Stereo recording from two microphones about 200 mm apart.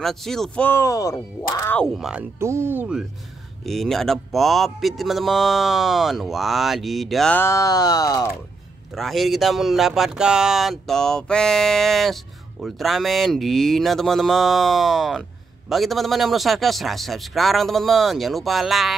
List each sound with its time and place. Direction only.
0.0 s speech: centre (ahead or behind)
2.0 s speech: 5° right (ahead or behind); by 8.3 s 15° left (ahead or behind)
8.9 s speech: centre (ahead or behind)